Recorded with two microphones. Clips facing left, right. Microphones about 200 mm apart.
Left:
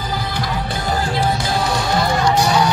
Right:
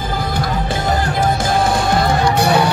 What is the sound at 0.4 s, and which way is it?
Music, 45° right (ahead or behind).